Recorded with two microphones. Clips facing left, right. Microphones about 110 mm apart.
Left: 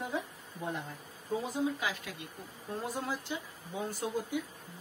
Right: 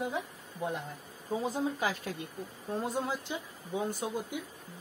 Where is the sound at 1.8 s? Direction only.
40° right (ahead or behind).